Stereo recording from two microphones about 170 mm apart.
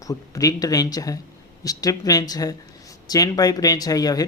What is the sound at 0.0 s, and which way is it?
Speech, 20° left (ahead or behind).